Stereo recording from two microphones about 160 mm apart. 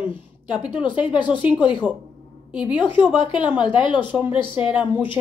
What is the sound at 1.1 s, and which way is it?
Speech, 30° left (ahead or behind).